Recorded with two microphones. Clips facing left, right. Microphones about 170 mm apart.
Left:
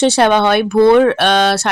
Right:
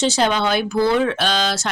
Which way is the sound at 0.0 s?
60° left (ahead or behind).